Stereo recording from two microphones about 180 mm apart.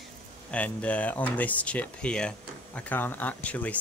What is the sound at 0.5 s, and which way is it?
Speech, 5° left (ahead or behind).